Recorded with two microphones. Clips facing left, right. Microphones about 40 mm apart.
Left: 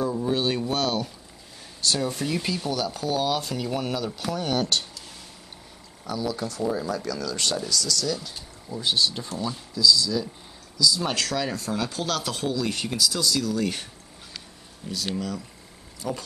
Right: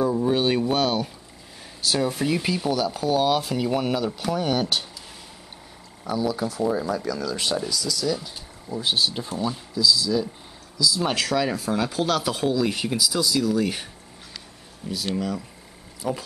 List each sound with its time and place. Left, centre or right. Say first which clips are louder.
0.0 s a sound: right 4 dB; centre
1.8 s speech: right 2 dB; centre
6.0 s speech: right 4 dB; centre
15.1 s speech: right 3 dB; centre